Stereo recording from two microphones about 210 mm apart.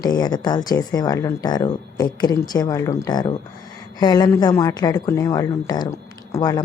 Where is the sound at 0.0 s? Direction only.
20° left (ahead or behind).